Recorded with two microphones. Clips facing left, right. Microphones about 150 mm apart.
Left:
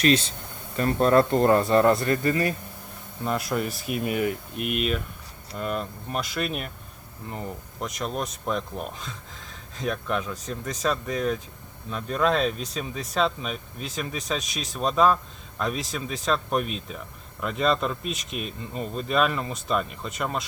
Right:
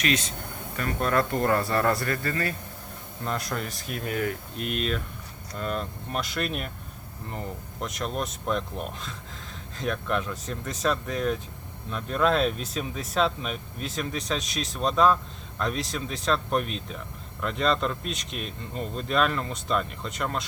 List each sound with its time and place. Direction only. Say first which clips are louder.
0.0 s speech: left 6 dB; 30° left (ahead or behind)
3.2 s speech: left 4 dB; 5° left (ahead or behind)